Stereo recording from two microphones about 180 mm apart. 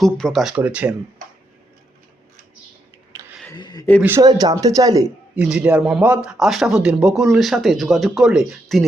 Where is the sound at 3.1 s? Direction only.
20° right (ahead or behind).